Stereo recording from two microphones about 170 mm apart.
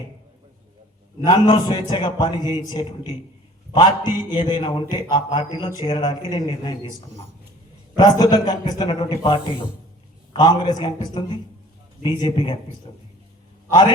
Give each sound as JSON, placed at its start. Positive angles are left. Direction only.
{"t": 1.3, "sound": "a man's voice", "side_deg": 25}
{"t": 8.2, "sound": "a man's voice", "side_deg": 25}